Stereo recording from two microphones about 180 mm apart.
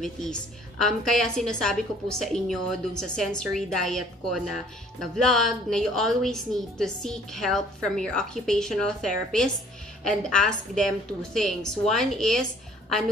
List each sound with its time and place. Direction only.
0.0 s a woman's voice: 5° left (ahead or behind)
5.0 s a woman's voice: centre (ahead or behind)